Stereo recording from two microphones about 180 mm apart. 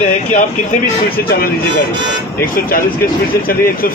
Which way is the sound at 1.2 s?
55° left (ahead or behind).